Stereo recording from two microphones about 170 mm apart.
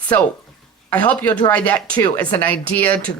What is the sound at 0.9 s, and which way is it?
Speech, 10° left (ahead or behind).